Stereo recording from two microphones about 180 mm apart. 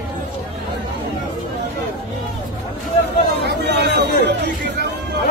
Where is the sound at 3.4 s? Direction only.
65° right (ahead or behind).